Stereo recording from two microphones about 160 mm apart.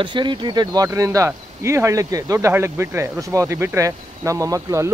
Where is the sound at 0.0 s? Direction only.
30° right (ahead or behind).